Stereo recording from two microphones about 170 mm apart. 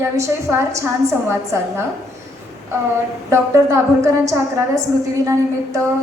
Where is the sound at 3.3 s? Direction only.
15° right (ahead or behind).